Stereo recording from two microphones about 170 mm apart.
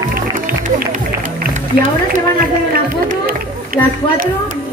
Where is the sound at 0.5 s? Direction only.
55° right (ahead or behind).